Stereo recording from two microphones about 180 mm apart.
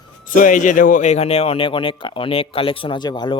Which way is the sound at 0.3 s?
45° left (ahead or behind).